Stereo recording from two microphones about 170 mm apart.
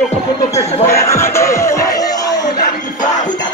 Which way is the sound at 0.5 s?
15° left (ahead or behind).